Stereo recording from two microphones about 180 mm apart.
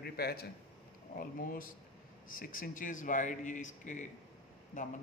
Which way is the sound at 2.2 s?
50° left (ahead or behind).